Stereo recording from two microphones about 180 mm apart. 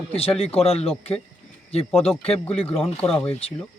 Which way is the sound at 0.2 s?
35° left (ahead or behind).